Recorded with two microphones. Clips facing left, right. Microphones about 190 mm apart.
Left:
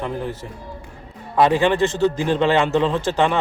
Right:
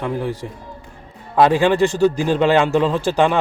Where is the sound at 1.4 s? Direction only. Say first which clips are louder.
Right 2 dB; 20° left (ahead or behind).